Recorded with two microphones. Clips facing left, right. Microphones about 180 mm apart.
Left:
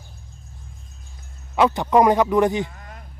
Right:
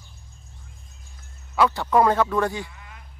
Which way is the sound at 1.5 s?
20° left (ahead or behind).